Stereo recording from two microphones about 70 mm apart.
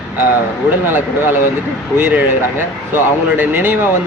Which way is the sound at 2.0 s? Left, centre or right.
Right.